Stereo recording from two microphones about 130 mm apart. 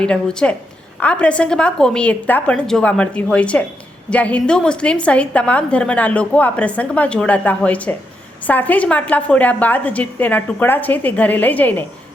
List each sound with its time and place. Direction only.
0.0 s a woman's voice: 5° left (ahead or behind)